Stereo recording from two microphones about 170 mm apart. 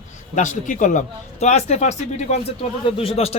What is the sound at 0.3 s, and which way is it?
A man's voice, 50° left (ahead or behind).